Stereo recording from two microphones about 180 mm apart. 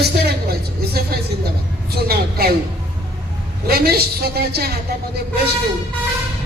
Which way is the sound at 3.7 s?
60° right (ahead or behind).